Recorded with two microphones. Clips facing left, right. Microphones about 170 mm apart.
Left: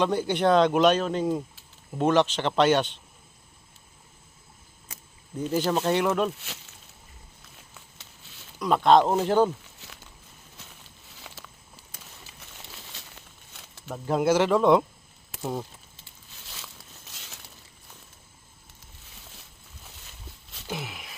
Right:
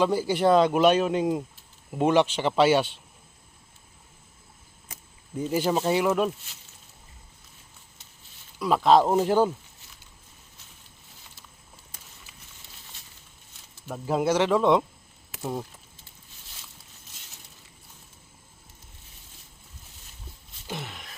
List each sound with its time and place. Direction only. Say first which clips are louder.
0.0 s speech: right 1 dB; 5° right (ahead or behind)
5.4 s speech: even; 10° right (ahead or behind)
6.4 s speech: left 9 dB; 80° left
7.7 s a sound: left 4 dB; 90° left
8.5 s speech: even; 5° right (ahead or behind)
10.6 s a sound: left 5 dB; 90° left; by 13.8 s 70° left (ahead or behind)
13.8 s speech: left 1 dB; 5° right (ahead or behind)
17.1 s mechanisms: left 5 dB; 90° left
19.1 s a sound: left 4 dB; 90° left
20.7 s wail: left 1 dB; 5° left (ahead or behind)